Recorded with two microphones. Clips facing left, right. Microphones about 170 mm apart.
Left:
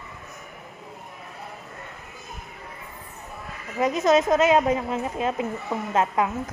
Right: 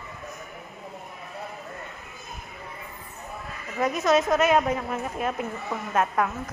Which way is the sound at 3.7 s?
20° left (ahead or behind).